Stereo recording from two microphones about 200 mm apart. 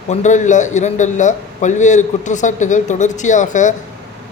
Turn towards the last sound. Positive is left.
turn(degrees=40)  # may be behind; listen again after turning